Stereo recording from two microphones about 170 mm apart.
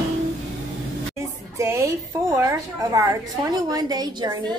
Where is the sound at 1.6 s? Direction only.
15° right (ahead or behind).